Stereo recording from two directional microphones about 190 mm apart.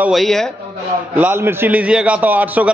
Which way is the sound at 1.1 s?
10° right (ahead or behind).